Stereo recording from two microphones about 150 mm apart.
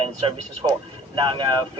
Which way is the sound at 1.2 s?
30° right (ahead or behind).